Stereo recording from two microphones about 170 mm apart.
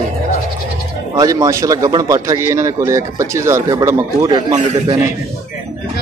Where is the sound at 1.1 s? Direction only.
20° right (ahead or behind).